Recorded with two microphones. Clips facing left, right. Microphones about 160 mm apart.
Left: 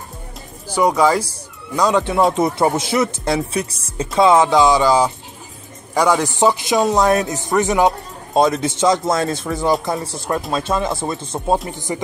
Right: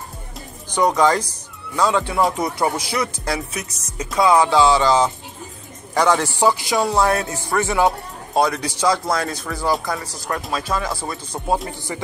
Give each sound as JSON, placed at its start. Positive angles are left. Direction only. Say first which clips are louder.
{"t": 0.7, "sound": "speech", "louder": "left 2 dB", "side_deg": 10}